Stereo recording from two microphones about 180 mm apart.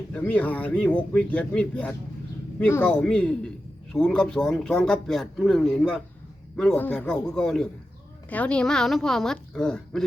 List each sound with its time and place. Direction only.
0.1 s a man's voice: 10° left (ahead or behind)